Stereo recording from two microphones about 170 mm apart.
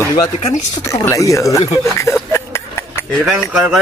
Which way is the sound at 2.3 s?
15° left (ahead or behind).